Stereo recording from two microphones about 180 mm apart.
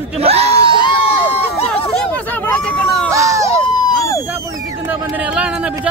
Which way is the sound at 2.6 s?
5° left (ahead or behind).